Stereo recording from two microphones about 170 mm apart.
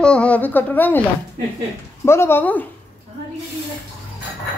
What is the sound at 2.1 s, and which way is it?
Speech, 15° left (ahead or behind).